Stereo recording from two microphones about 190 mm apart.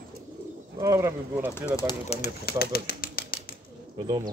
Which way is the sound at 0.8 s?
15° right (ahead or behind).